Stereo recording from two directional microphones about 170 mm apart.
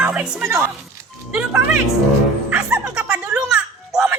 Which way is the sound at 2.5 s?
5° right (ahead or behind).